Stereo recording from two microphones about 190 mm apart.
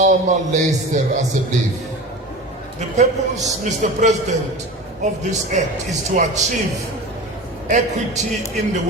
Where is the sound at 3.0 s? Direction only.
40° right (ahead or behind).